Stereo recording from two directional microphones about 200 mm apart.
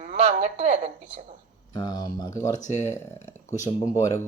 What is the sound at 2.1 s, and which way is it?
Speech, 20° left (ahead or behind).